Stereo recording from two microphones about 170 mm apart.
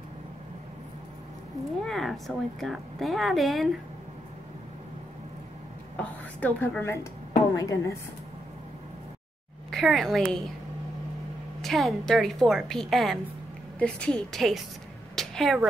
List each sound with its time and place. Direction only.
1.9 s a woman's voice: centre (ahead or behind)
5.9 s a woman's voice: 10° left (ahead or behind)
9.7 s a woman's voice: centre (ahead or behind)
11.6 s a woman's voice: centre (ahead or behind)
15.1 s a sound: centre (ahead or behind)